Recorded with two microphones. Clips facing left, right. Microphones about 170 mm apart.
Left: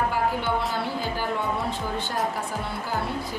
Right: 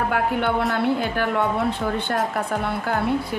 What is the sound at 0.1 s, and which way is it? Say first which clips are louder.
A woman's voice: right 4 dB; 60° right (ahead or behind).